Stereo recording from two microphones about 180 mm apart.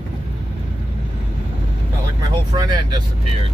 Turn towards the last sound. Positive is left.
turn(degrees=-20)  # may be behind; listen again after turning